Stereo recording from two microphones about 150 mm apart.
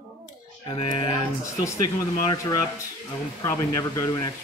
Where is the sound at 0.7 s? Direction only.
35° left (ahead or behind).